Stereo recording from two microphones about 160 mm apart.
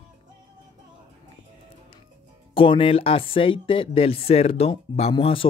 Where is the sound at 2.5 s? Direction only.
35° left (ahead or behind).